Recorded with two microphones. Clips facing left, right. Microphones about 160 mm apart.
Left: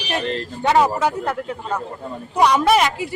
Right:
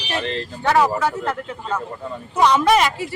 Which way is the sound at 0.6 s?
20° left (ahead or behind).